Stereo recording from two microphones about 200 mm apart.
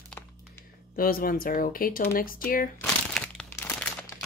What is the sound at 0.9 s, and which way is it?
Speech, 45° left (ahead or behind).